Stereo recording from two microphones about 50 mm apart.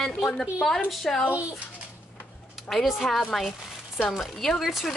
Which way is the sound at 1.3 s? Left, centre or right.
Right.